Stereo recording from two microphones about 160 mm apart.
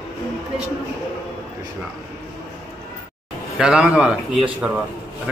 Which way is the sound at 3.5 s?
5° right (ahead or behind).